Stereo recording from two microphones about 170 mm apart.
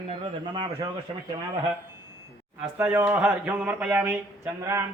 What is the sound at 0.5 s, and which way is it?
Speech, 30° right (ahead or behind).